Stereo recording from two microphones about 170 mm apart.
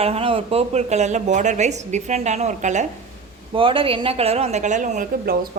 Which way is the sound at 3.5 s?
30° right (ahead or behind).